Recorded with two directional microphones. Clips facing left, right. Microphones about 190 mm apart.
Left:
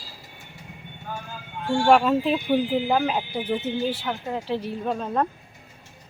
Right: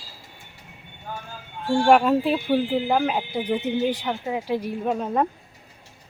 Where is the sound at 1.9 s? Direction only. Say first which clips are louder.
Right 1 dB; 5° right (ahead or behind).